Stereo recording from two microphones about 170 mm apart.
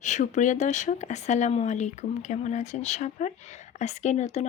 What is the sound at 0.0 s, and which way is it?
Speech, 45° left (ahead or behind).